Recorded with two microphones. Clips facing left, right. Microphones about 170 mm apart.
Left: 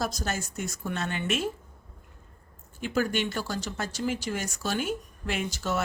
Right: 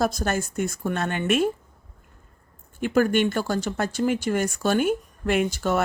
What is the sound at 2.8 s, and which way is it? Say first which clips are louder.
Speech: right 7 dB; 55° right (ahead or behind).